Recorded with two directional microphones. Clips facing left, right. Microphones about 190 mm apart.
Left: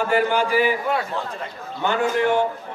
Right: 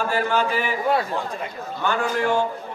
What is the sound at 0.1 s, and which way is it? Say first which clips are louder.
Speech: left 4 dB; 15° left (ahead or behind).